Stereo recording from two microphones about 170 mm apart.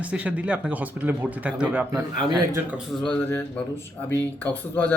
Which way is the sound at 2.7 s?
Centre (ahead or behind).